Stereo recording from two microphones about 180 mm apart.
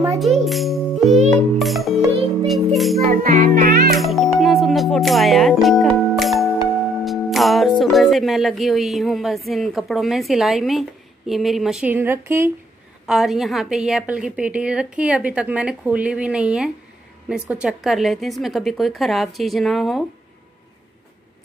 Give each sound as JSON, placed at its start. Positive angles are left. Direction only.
{"t": 0.5, "sound": "music", "side_deg": 0}
{"t": 3.1, "sound": "speech", "side_deg": -50}
{"t": 3.9, "sound": "music", "side_deg": 0}
{"t": 7.8, "sound": "a woman's voice", "side_deg": 0}
{"t": 13.0, "sound": "a woman's voice", "side_deg": 0}